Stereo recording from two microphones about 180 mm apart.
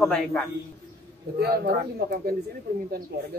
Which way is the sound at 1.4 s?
60° right (ahead or behind).